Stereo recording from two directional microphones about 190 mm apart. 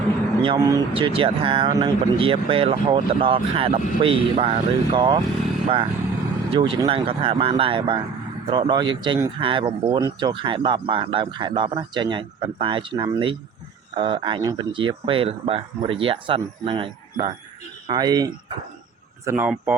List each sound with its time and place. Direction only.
0.4 s speech: 20° right (ahead or behind)